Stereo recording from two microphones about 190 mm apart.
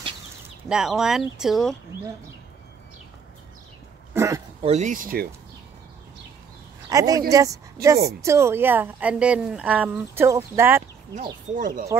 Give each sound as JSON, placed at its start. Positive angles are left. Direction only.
{"t": 0.7, "sound": "speech", "side_deg": -5}
{"t": 4.1, "sound": "a sound", "side_deg": -15}
{"t": 4.6, "sound": "speech", "side_deg": -35}
{"t": 6.9, "sound": "speech", "side_deg": -20}
{"t": 11.5, "sound": "speech", "side_deg": -45}